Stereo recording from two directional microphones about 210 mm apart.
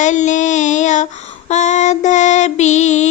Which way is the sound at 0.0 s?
35° left (ahead or behind).